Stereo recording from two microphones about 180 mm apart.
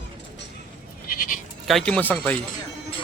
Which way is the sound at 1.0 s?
50° left (ahead or behind).